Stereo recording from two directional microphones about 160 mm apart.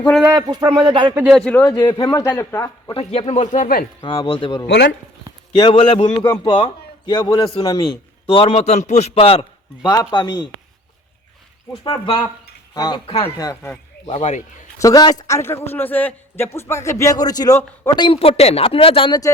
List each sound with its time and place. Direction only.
0.3 s speech: 25° right (ahead or behind)
1.3 s a man's voice: 5° left (ahead or behind)
1.6 s a man's voice: 25° left (ahead or behind)
2.2 s a man's voice: 10° left (ahead or behind)
2.9 s speech: 40° left (ahead or behind); by 3.8 s 60° left (ahead or behind)
4.0 s a man's voice: 35° left (ahead or behind)
9.9 s a man's voice: 25° left (ahead or behind)
11.8 s a man's voice: 30° left (ahead or behind)
14.1 s speech: 45° left (ahead or behind)
14.8 s a man's voice: 20° left (ahead or behind)